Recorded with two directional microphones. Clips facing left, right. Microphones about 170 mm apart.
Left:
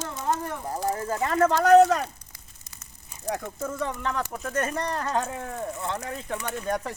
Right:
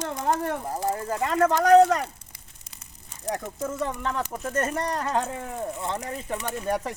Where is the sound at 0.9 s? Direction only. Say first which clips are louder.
Left 1 dB; 15° right (ahead or behind).